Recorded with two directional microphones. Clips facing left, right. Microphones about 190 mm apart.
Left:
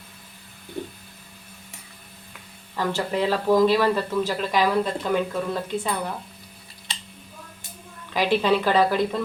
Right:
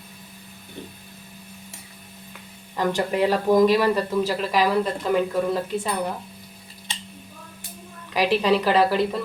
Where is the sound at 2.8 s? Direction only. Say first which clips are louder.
Right 3 dB; 15° right (ahead or behind).